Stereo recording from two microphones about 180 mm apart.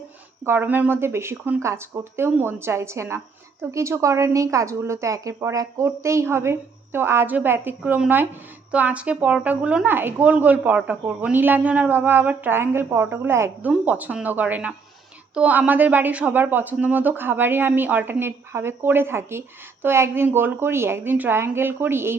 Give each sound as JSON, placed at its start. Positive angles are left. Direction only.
{"t": 0.4, "sound": "speech", "side_deg": -10}